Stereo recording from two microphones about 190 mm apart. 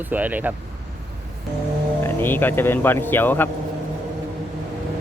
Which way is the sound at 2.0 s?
10° left (ahead or behind).